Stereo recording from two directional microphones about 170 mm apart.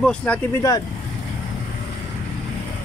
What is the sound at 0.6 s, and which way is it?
Speech, 20° left (ahead or behind).